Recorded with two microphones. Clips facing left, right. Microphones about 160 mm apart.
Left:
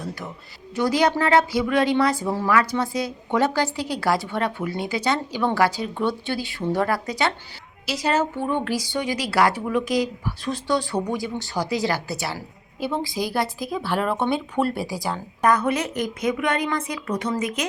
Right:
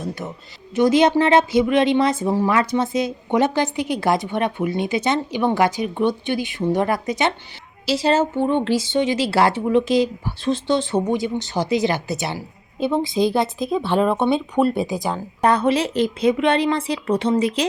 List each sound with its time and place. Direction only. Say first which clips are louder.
0.0 s a woman's voice: right 4 dB; 20° right (ahead or behind)